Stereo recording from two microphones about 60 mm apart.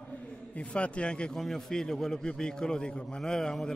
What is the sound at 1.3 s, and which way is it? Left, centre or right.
A man's voice, centre.